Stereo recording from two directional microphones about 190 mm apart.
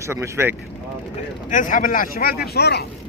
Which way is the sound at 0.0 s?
15° right (ahead or behind).